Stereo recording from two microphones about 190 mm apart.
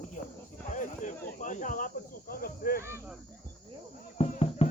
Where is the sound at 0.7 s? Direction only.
40° left (ahead or behind).